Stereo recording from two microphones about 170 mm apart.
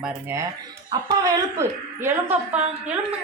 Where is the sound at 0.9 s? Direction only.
20° right (ahead or behind).